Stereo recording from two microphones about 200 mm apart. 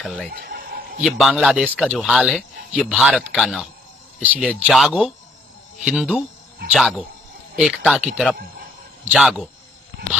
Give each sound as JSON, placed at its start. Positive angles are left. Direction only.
{"t": 0.0, "sound": "speech", "side_deg": 0}
{"t": 0.4, "sound": "a sound", "side_deg": -50}
{"t": 1.0, "sound": "speech", "side_deg": 0}
{"t": 9.1, "sound": "speech", "side_deg": 0}